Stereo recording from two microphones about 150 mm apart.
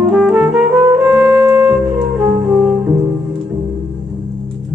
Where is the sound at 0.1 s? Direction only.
5° right (ahead or behind).